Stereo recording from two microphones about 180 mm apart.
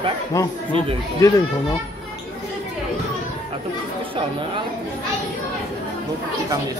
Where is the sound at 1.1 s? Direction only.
20° left (ahead or behind).